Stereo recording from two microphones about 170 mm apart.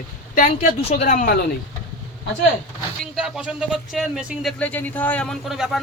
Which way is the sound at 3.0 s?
5° right (ahead or behind).